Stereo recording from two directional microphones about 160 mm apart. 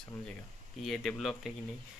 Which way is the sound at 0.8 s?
Centre (ahead or behind).